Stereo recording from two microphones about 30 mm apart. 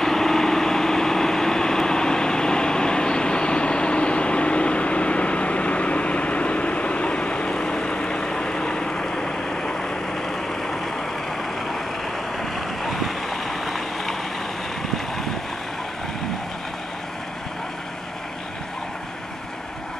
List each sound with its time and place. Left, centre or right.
0.0 s vehicle: centre
12.4 s vehicle: centre